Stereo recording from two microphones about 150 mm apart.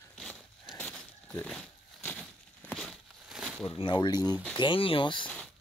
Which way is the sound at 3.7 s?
35° left (ahead or behind).